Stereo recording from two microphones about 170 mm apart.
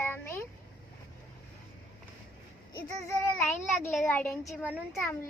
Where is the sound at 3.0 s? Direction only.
15° left (ahead or behind).